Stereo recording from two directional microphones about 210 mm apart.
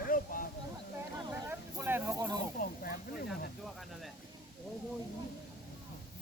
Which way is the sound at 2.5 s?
45° left (ahead or behind).